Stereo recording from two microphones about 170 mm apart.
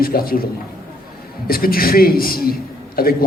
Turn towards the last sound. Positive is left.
turn(degrees=60)  # may be behind; listen again after turning